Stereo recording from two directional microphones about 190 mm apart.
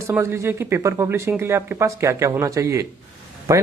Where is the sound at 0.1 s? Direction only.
15° right (ahead or behind).